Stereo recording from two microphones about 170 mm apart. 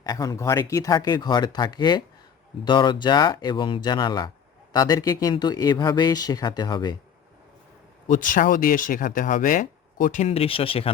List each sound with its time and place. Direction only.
0.0 s speech: 20° left (ahead or behind)
8.1 s speech: 50° left (ahead or behind); by 10.9 s 35° left (ahead or behind)